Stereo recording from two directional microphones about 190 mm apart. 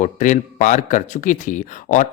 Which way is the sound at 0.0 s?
40° left (ahead or behind).